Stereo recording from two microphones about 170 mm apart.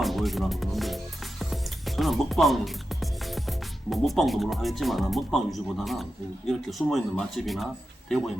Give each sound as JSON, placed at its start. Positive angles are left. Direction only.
{"t": 0.0, "sound": "music", "side_deg": 0}
{"t": 1.4, "sound": "speech", "side_deg": 0}